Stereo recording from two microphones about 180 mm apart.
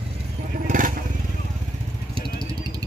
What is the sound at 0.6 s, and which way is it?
Vehicle, 45° right (ahead or behind).